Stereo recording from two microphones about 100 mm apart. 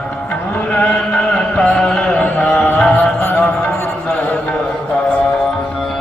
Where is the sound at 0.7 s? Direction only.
15° left (ahead or behind).